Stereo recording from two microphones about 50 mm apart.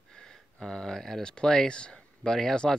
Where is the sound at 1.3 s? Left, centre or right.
Centre.